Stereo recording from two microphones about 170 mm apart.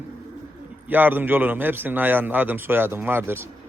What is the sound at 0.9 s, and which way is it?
A man's voice, 10° right (ahead or behind).